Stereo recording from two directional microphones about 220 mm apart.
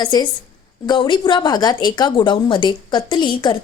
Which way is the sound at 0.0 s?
20° left (ahead or behind).